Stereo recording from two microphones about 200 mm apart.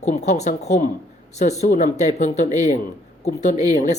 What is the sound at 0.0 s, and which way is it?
A woman's voice, 35° left (ahead or behind).